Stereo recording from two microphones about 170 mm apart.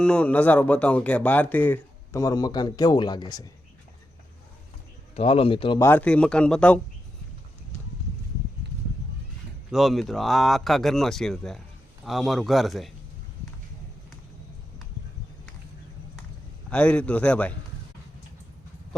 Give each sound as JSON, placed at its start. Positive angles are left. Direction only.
{"t": 0.0, "sound": "speech", "side_deg": 5}
{"t": 5.1, "sound": "speech", "side_deg": 35}
{"t": 5.8, "sound": "speech", "side_deg": 10}
{"t": 9.7, "sound": "speech", "side_deg": 0}
{"t": 16.6, "sound": "speech", "side_deg": 5}